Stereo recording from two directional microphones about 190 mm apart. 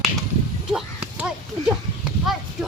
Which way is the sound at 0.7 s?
5° right (ahead or behind).